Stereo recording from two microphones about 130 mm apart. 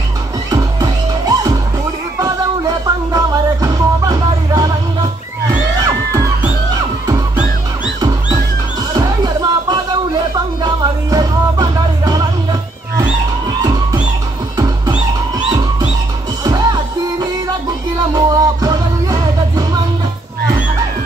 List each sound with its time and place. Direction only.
0.5 s music: 25° right (ahead or behind)
3.1 s music: 25° right (ahead or behind)
5.9 s music: 25° right (ahead or behind)
8.9 s music: 30° right (ahead or behind)
16.4 s music: 30° right (ahead or behind)